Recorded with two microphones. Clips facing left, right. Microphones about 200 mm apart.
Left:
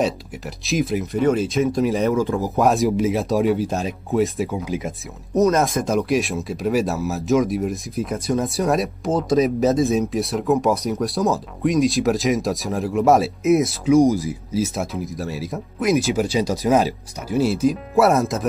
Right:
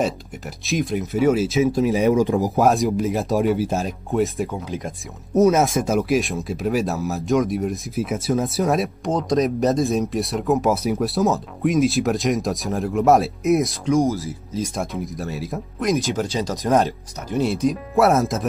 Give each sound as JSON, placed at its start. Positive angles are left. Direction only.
{"t": 0.7, "sound": "speech", "side_deg": 0}
{"t": 2.0, "sound": "speech", "side_deg": -15}
{"t": 2.6, "sound": "speech", "side_deg": 0}
{"t": 5.3, "sound": "speech", "side_deg": -5}
{"t": 13.9, "sound": "speech", "side_deg": 15}